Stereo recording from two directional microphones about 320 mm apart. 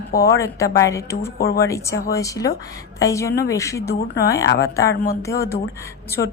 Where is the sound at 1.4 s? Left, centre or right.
Left.